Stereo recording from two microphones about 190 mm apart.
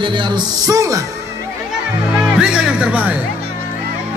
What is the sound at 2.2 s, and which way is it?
Speech, 5° right (ahead or behind).